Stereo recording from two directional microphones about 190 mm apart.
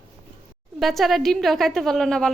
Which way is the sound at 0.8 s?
Centre (ahead or behind).